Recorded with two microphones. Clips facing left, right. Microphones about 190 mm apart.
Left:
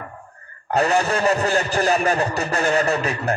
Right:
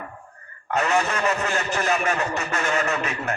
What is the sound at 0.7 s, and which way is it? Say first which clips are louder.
A man's voice: left 4 dB; 35° left (ahead or behind).